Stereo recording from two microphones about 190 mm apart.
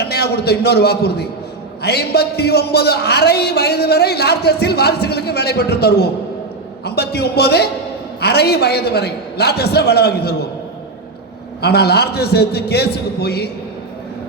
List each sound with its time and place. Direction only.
0.0 s a man's voice: 55° left (ahead or behind)
11.6 s a man's voice: 55° left (ahead or behind)